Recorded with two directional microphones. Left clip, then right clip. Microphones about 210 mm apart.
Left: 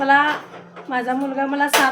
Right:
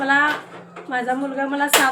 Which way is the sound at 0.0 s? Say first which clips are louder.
Left 2 dB; 15° left (ahead or behind).